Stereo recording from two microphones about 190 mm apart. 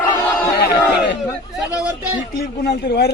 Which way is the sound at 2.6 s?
55° left (ahead or behind).